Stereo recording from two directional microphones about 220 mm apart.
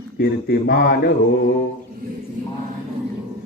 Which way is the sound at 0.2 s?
45° left (ahead or behind).